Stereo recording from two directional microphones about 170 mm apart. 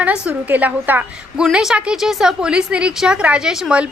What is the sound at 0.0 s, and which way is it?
A woman's voice, 10° right (ahead or behind).